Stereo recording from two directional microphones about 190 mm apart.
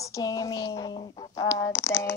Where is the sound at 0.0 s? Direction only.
15° left (ahead or behind).